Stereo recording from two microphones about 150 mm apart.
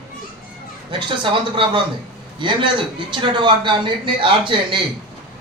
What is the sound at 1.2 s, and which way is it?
A man's voice, 35° right (ahead or behind).